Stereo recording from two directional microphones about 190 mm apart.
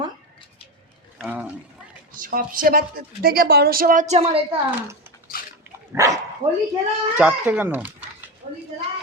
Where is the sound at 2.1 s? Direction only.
45° right (ahead or behind).